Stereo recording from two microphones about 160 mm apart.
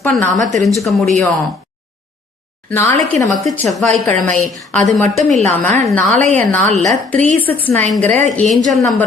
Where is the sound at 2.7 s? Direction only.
15° left (ahead or behind).